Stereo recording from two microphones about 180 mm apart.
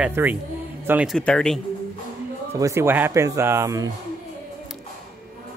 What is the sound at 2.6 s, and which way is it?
Speech, 15° right (ahead or behind).